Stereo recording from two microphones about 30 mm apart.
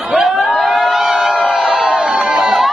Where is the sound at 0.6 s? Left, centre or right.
Centre.